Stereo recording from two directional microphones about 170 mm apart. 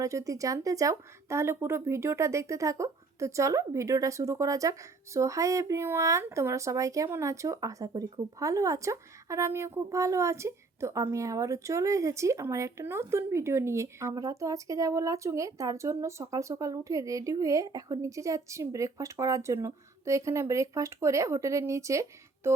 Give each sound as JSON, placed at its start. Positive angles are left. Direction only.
{"t": 0.0, "sound": "speech", "side_deg": -20}